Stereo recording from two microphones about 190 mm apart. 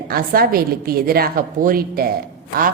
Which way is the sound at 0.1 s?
50° right (ahead or behind).